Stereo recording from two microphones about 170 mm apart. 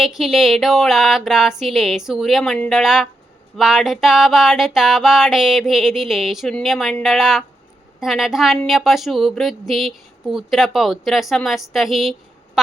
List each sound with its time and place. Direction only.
0.0 s speech: centre (ahead or behind)